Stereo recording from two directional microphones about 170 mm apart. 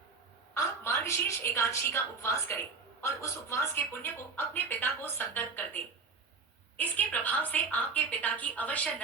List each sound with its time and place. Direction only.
0.5 s a woman's voice: 15° left (ahead or behind)